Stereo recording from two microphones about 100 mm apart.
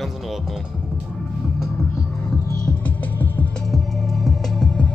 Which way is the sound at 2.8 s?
20° left (ahead or behind).